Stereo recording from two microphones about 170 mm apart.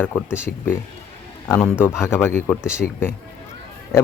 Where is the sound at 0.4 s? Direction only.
15° left (ahead or behind).